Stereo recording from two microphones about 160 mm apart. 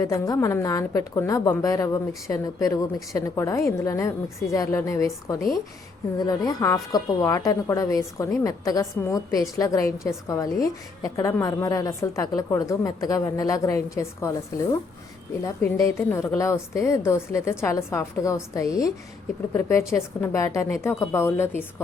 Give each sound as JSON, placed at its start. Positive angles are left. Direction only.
{"t": 0.0, "sound": "a woman's voice", "side_deg": 20}
{"t": 15.6, "sound": "a woman's voice", "side_deg": 15}